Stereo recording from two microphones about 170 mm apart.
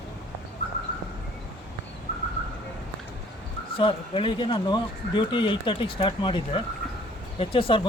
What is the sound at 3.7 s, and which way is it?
Speech, 30° left (ahead or behind).